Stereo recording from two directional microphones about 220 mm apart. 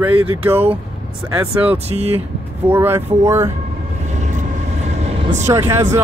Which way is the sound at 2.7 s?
10° right (ahead or behind).